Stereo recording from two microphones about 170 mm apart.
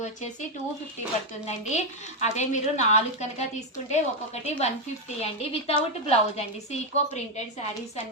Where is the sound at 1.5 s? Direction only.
45° left (ahead or behind).